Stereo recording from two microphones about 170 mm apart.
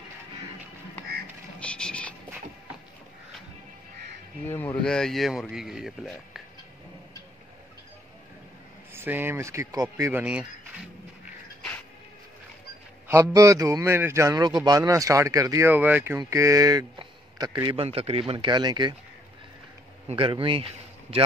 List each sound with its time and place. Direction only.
1.6 s music: 5° left (ahead or behind)
4.5 s speech: 10° left (ahead or behind)
8.9 s a man's voice: 15° right (ahead or behind)
13.1 s a man's voice: 15° right (ahead or behind)
20.1 s a man's voice: 30° right (ahead or behind)